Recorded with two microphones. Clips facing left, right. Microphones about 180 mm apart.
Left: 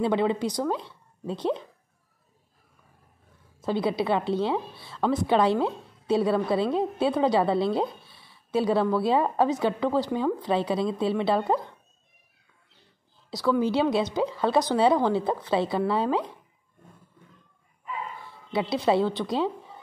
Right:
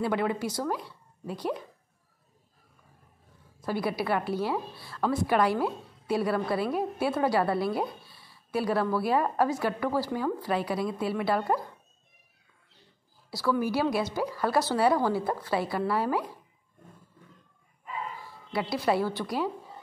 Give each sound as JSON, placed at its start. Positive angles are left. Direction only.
{"t": 0.0, "sound": "a woman's voice", "side_deg": 25}
{"t": 3.6, "sound": "a woman's voice", "side_deg": 20}
{"t": 13.3, "sound": "a woman's voice", "side_deg": 20}
{"t": 18.5, "sound": "a woman's voice", "side_deg": 20}